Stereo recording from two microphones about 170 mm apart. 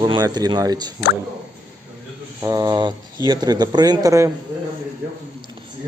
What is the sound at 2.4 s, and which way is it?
Speech, 20° right (ahead or behind).